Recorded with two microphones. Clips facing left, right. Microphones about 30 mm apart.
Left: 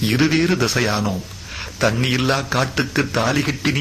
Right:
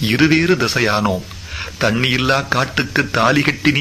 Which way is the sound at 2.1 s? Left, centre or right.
Centre.